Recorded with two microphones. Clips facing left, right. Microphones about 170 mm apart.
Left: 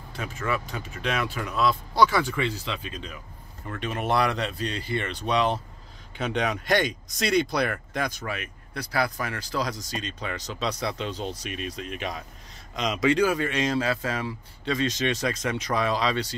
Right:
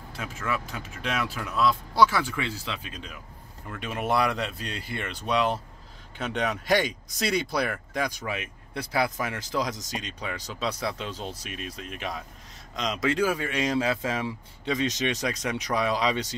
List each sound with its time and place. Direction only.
0.1 s speech: 5° right (ahead or behind)